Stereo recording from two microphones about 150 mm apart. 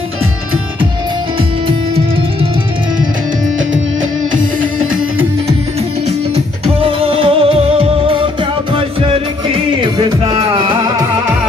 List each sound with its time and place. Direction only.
6.0 s music: 45° right (ahead or behind)